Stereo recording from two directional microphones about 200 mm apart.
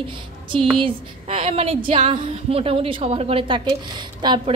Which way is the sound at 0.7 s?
30° right (ahead or behind).